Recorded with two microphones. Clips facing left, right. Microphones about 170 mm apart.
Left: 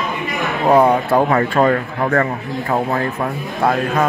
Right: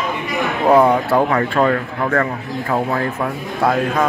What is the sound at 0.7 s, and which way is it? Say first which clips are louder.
A man's voice: even; 15° left (ahead or behind).